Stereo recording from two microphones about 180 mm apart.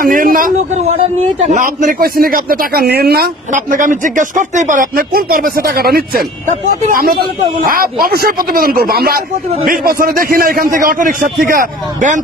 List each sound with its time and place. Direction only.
0.0 s a man's voice: 50° right (ahead or behind)